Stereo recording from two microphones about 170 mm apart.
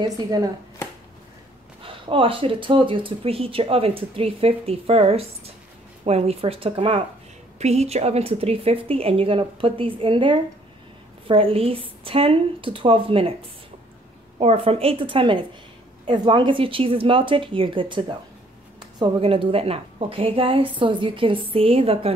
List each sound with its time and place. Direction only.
0.0 s speech: 25° right (ahead or behind)
1.9 s speech: 30° right (ahead or behind)
14.4 s speech: 35° right (ahead or behind)